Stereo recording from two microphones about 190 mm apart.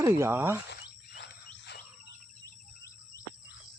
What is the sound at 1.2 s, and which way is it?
Wild animals, 65° left (ahead or behind).